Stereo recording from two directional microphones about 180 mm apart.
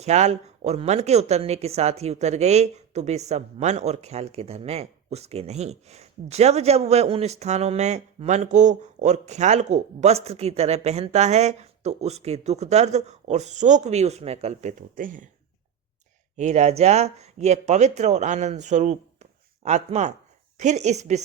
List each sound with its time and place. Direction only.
0.0 s speech: 40° right (ahead or behind)
16.4 s speech: 40° right (ahead or behind)